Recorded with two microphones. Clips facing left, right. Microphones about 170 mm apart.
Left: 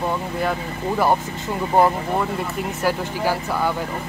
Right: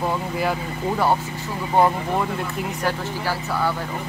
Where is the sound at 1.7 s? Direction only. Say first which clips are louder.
Left 1 dB; 5° left (ahead or behind).